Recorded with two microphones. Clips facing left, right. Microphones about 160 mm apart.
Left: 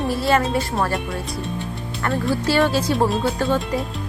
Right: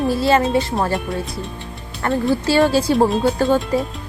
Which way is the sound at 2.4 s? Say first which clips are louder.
Right 3 dB; 30° right (ahead or behind).